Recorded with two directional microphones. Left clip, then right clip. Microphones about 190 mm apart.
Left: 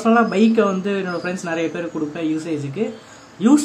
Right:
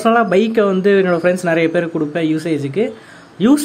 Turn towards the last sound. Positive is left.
turn(degrees=-30)  # may be behind; listen again after turning